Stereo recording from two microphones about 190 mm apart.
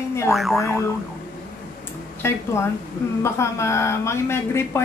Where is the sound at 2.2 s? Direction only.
15° left (ahead or behind).